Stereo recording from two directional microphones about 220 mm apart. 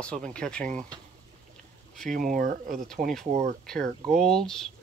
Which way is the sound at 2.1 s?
35° right (ahead or behind).